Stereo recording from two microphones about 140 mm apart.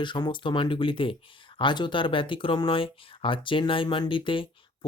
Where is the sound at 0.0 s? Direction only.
35° left (ahead or behind).